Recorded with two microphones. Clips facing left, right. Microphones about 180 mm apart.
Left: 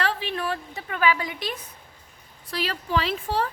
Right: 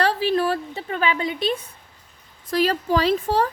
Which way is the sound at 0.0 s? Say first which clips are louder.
Right 7 dB; 35° right (ahead or behind).